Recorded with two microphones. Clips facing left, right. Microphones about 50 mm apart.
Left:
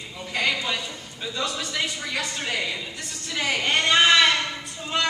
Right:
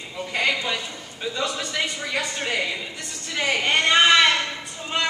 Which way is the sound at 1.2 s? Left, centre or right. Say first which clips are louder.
Right 2 dB; centre.